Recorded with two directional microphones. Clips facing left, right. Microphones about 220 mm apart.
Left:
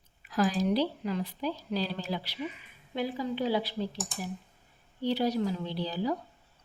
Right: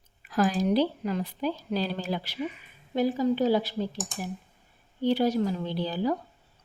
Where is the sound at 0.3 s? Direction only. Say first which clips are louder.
Right 3 dB; 50° right (ahead or behind).